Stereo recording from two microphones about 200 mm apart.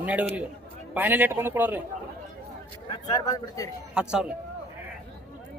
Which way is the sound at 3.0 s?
20° left (ahead or behind).